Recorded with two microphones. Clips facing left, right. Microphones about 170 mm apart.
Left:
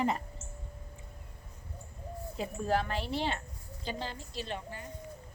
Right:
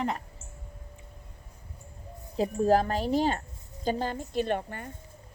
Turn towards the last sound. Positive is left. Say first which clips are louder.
# right 10 dB
turn(degrees=-55)  # may be behind; listen again after turning